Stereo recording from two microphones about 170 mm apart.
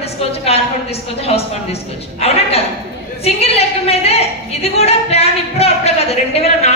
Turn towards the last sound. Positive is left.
turn(degrees=35)  # may be behind; listen again after turning